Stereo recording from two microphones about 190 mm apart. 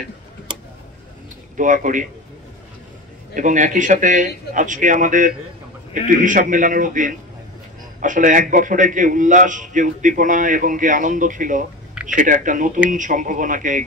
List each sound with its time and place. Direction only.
1.6 s a man's voice: 45° right (ahead or behind)
3.3 s a man's voice: 40° right (ahead or behind)